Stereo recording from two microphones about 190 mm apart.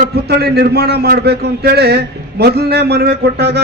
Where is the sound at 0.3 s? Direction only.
55° right (ahead or behind).